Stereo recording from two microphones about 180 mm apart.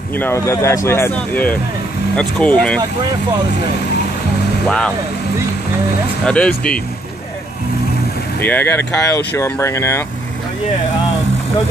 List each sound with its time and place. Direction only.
0.1 s speech: 15° left (ahead or behind)
4.6 s speech: 5° left (ahead or behind)
6.2 s speech: 5° left (ahead or behind)
8.4 s speech: 10° left (ahead or behind)